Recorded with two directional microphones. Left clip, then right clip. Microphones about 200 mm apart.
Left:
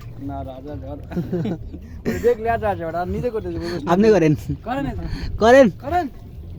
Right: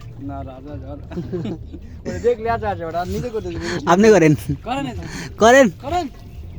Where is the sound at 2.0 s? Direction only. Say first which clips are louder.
Even; 50° left (ahead or behind); by 3.5 s 30° left (ahead or behind).